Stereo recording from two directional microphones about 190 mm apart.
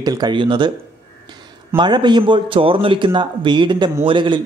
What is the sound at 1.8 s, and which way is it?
Speech, 25° right (ahead or behind).